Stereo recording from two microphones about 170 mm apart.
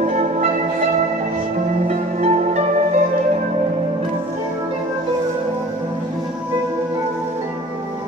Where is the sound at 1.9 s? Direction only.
40° right (ahead or behind).